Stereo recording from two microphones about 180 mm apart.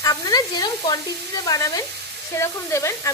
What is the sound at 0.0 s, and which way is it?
Sizzle, 20° left (ahead or behind).